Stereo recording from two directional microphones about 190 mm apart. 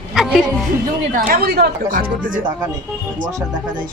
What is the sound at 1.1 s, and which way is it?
Speech, 50° right (ahead or behind).